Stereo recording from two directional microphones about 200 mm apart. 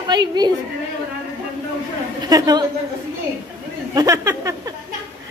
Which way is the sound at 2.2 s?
20° right (ahead or behind).